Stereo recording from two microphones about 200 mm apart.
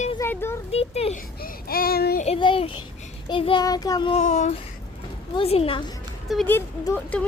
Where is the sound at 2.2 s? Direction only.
25° left (ahead or behind).